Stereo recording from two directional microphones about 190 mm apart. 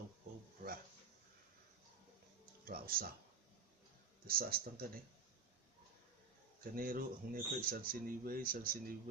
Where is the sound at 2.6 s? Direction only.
50° right (ahead or behind).